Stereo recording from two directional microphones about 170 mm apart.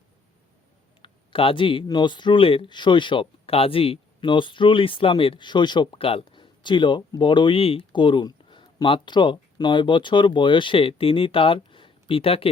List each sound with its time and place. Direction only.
1.0 s speech: 30° left (ahead or behind)